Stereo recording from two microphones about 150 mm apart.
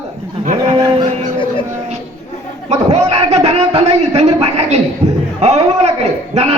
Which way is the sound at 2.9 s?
45° right (ahead or behind).